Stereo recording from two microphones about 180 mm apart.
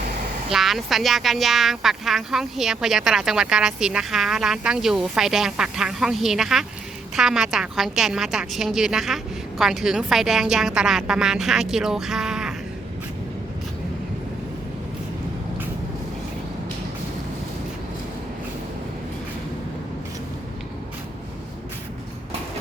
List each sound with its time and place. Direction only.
0.5 s speech: centre (ahead or behind)